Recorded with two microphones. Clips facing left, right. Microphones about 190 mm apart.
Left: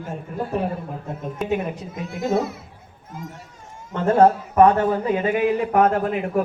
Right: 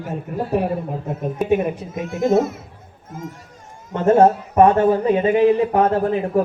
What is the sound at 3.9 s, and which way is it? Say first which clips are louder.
Speech: right 2 dB; 25° right (ahead or behind).